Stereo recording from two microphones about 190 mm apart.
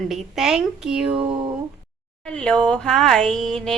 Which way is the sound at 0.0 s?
Centre (ahead or behind).